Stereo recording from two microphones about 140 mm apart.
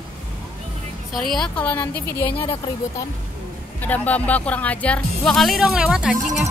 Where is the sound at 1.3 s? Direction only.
5° left (ahead or behind).